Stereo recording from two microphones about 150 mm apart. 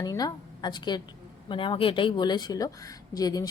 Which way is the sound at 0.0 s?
25° left (ahead or behind).